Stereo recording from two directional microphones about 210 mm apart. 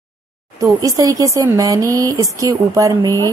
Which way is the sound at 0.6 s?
15° right (ahead or behind).